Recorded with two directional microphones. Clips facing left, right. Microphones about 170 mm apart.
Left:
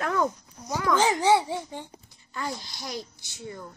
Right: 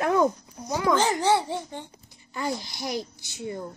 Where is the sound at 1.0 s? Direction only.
10° left (ahead or behind).